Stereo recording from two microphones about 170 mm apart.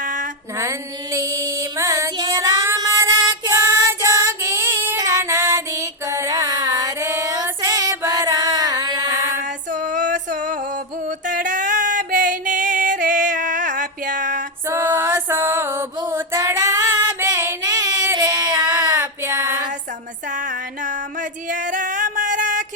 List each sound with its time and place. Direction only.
0.0 s a sound: 50° right (ahead or behind)
0.6 s female singing: 15° right (ahead or behind)
9.4 s music: 50° right (ahead or behind)
14.7 s music: 15° right (ahead or behind)
20.3 s music: 50° right (ahead or behind)